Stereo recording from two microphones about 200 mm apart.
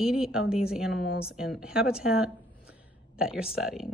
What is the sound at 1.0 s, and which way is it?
Speech, 50° left (ahead or behind).